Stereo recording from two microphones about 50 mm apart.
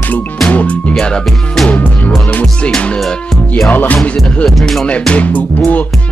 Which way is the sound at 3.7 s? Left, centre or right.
Left.